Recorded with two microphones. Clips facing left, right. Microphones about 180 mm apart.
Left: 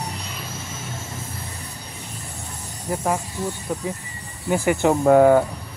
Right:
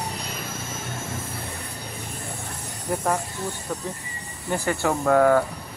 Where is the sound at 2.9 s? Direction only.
Centre (ahead or behind).